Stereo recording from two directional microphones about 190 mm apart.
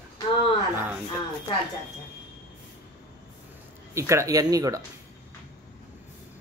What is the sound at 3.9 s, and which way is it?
Speech, 15° right (ahead or behind).